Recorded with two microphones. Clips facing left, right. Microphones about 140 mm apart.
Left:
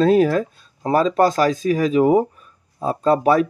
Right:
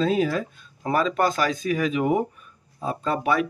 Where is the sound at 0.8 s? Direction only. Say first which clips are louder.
Left 6 dB; 35° left (ahead or behind).